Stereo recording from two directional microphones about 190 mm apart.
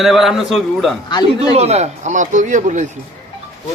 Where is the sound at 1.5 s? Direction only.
35° right (ahead or behind).